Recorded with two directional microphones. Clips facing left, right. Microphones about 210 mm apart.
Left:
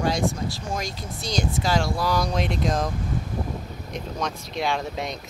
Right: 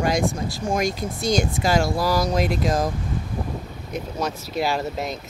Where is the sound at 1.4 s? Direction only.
10° right (ahead or behind).